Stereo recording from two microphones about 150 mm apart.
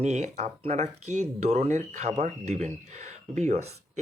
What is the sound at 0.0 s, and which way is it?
Speech, 50° right (ahead or behind).